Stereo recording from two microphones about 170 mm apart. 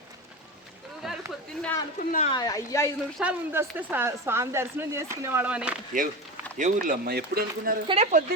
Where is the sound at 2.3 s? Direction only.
20° left (ahead or behind).